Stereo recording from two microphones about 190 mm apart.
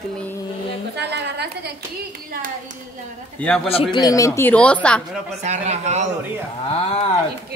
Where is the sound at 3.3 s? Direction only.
5° left (ahead or behind).